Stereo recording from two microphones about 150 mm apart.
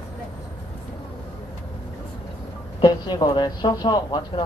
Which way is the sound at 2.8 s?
25° left (ahead or behind).